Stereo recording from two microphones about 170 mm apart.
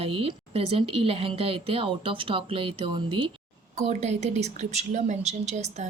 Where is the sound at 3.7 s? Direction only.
40° right (ahead or behind).